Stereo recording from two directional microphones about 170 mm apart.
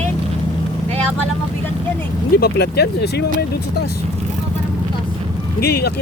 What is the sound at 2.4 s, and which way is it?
Speech, 70° left (ahead or behind).